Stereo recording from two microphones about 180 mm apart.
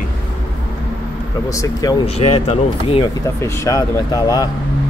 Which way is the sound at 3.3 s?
15° left (ahead or behind).